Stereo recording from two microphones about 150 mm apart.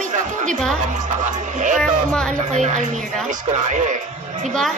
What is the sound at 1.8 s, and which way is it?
Speech, 5° left (ahead or behind).